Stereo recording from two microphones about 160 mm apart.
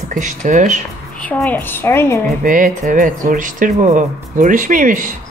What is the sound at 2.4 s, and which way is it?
Speech, 55° right (ahead or behind).